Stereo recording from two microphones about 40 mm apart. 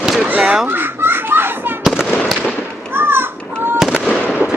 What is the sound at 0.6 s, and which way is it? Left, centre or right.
Fowl, right.